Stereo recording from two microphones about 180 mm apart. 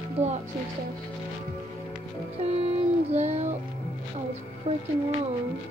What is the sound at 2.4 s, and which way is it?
Music, 35° right (ahead or behind).